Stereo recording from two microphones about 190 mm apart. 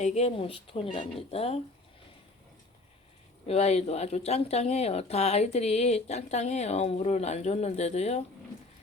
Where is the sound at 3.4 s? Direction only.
35° left (ahead or behind).